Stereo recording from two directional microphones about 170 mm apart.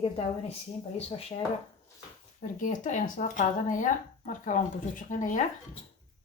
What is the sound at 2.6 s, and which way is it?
Speech, 50° left (ahead or behind).